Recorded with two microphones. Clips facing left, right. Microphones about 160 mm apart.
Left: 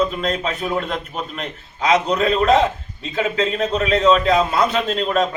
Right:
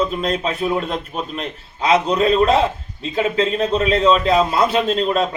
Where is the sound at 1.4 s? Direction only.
30° right (ahead or behind).